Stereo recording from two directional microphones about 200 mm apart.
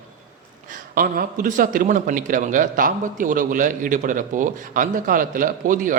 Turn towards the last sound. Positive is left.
turn(degrees=-40)  # may be behind; listen again after turning